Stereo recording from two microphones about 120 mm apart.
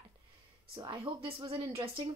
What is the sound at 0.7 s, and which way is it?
Speech, 45° right (ahead or behind).